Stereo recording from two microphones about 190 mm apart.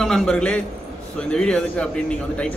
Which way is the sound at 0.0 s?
Centre (ahead or behind).